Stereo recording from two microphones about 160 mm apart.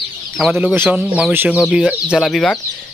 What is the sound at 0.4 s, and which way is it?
Speech, 5° right (ahead or behind).